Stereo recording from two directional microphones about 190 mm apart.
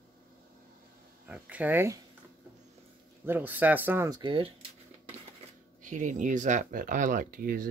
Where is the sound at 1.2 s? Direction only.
5° right (ahead or behind).